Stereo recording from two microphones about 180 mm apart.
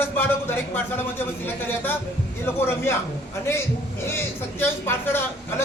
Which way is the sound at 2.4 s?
15° left (ahead or behind).